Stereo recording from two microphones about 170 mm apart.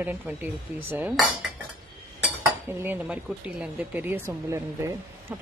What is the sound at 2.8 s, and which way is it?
Speech, 10° right (ahead or behind).